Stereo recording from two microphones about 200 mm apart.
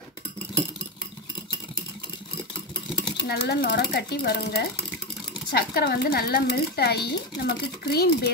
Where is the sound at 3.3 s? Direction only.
55° left (ahead or behind).